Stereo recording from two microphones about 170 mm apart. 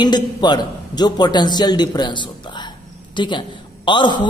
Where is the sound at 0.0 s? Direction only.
25° left (ahead or behind).